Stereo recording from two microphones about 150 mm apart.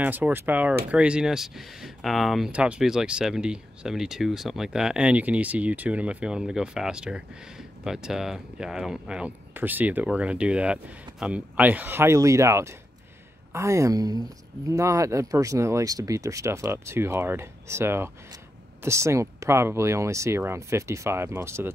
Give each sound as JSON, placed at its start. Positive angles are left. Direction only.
{"t": 0.0, "sound": "speech", "side_deg": -10}